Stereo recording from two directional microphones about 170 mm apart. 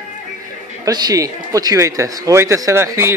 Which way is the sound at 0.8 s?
20° right (ahead or behind).